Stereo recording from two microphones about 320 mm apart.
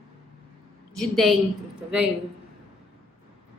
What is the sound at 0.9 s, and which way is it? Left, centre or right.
Speech, centre.